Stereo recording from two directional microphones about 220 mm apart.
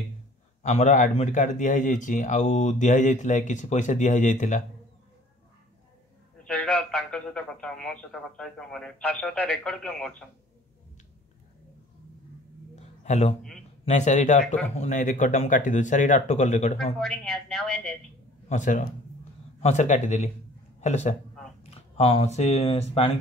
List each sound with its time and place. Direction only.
0.6 s speech: 30° left (ahead or behind)
6.4 s a man's voice: 5° left (ahead or behind)
12.7 s a sound: 30° left (ahead or behind)
13.8 s speech: 30° left (ahead or behind)
17.0 s a man's voice: centre (ahead or behind)
18.5 s speech: 35° left (ahead or behind)